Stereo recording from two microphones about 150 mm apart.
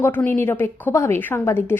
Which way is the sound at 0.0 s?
15° left (ahead or behind).